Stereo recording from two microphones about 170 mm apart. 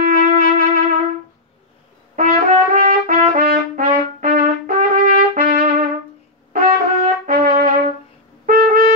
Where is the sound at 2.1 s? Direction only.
50° right (ahead or behind).